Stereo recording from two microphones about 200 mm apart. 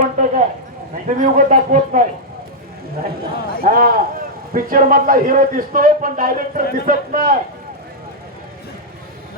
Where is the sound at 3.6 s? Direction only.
45° right (ahead or behind).